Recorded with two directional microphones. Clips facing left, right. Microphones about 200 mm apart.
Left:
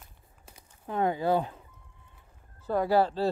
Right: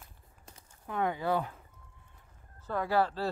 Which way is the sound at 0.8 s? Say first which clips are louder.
Left 4 dB; 30° left (ahead or behind).